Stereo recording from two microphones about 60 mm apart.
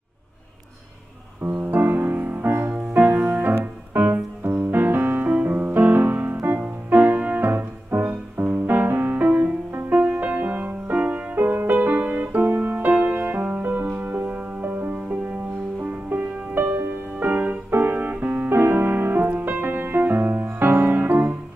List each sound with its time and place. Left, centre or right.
1.4 s music: right
12.4 s keyboard: right
12.9 s music: right
17.6 s piano: right